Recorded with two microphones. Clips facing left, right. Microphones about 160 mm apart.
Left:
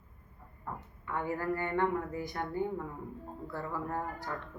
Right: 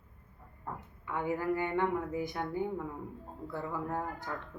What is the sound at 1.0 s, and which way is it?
Speech, 10° right (ahead or behind).